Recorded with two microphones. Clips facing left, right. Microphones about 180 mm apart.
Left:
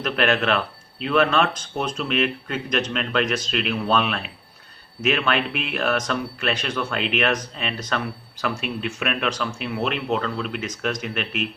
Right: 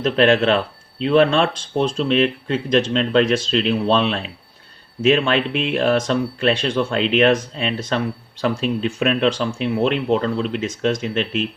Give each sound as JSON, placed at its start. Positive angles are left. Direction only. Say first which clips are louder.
{"t": 0.0, "sound": "speech", "louder": "right 6 dB", "side_deg": -25}